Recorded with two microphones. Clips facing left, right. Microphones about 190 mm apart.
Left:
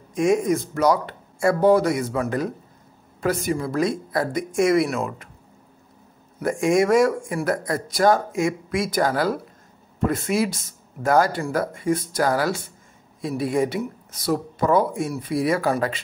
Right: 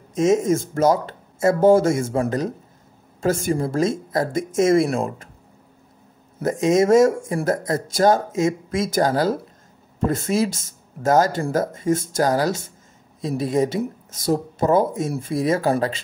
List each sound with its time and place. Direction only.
0.1 s speech: 25° right (ahead or behind)
6.4 s speech: 20° right (ahead or behind)
12.4 s speech: 40° right (ahead or behind)
13.2 s speech: 25° right (ahead or behind)